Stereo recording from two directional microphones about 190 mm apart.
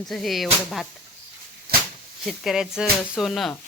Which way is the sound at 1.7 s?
55° right (ahead or behind).